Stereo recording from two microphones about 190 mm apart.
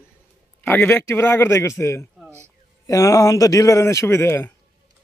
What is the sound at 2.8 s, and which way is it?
A man's voice, 15° left (ahead or behind).